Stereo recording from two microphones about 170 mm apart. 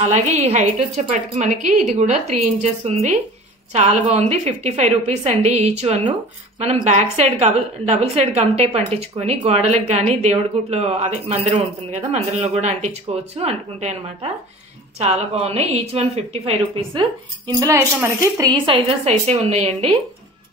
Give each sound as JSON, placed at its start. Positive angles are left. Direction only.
{"t": 0.0, "sound": "a woman's voice", "side_deg": -40}
{"t": 17.6, "sound": "a woman's voice", "side_deg": -15}
{"t": 19.0, "sound": "a woman's voice", "side_deg": -40}